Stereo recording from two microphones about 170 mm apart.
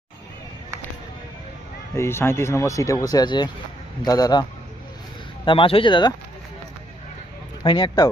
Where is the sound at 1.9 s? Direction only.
15° left (ahead or behind).